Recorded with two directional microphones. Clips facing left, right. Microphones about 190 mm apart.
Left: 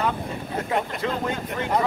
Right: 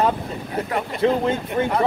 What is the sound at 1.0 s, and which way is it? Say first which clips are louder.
Speech: right 9 dB; 30° right (ahead or behind).